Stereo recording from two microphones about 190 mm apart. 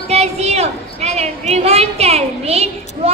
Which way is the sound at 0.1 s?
35° right (ahead or behind).